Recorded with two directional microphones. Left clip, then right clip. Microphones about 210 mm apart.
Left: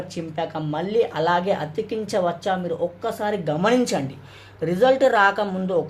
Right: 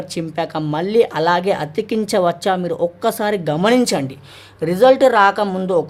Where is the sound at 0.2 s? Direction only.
35° right (ahead or behind).